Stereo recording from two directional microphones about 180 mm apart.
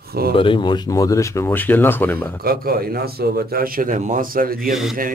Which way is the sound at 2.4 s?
55° right (ahead or behind).